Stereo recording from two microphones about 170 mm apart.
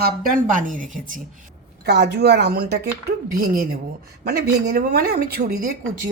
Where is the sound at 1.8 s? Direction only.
80° right; by 3.7 s 55° right (ahead or behind).